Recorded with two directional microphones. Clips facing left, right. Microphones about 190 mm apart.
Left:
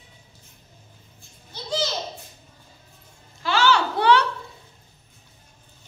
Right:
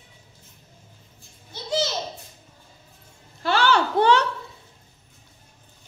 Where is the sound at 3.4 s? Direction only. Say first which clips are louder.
Even; 55° right (ahead or behind).